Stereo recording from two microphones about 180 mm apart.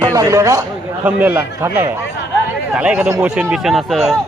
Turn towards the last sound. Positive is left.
turn(degrees=0)  # may be behind; listen again after turning